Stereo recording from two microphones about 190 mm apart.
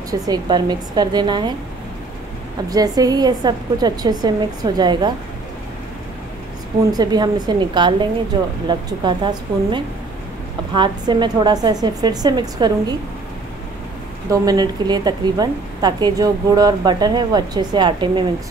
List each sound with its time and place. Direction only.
0.1 s a woman's voice: 20° right (ahead or behind)
2.7 s a woman's voice: 20° right (ahead or behind)
6.9 s a woman's voice: 20° right (ahead or behind)
14.4 s a woman's voice: 20° right (ahead or behind)